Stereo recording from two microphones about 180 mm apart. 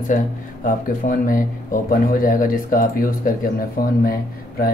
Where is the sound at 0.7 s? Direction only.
50° left (ahead or behind).